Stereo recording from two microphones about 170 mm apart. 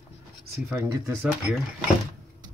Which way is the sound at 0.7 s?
15° right (ahead or behind).